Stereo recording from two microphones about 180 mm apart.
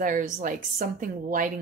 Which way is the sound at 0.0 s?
45° right (ahead or behind).